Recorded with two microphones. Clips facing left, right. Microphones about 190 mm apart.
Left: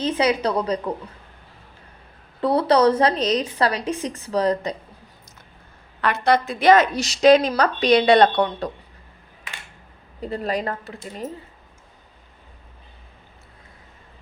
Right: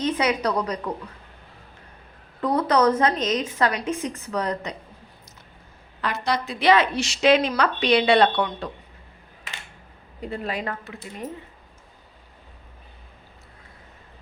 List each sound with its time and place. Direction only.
0.0 s a woman's voice: 30° left (ahead or behind)
2.4 s a woman's voice: 30° left (ahead or behind)
6.0 s a woman's voice: 60° left (ahead or behind); by 8.7 s 40° left (ahead or behind)
10.2 s a woman's voice: 40° left (ahead or behind)